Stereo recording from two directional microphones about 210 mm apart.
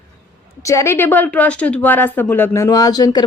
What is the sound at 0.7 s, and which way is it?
Speech, 15° left (ahead or behind).